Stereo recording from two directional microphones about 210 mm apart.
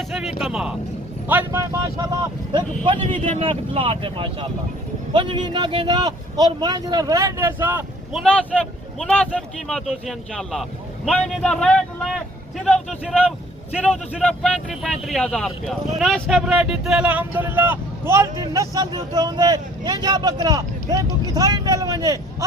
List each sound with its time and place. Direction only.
0.1 s speech: centre (ahead or behind)
8.2 s speech: 5° left (ahead or behind); by 22.4 s 15° right (ahead or behind)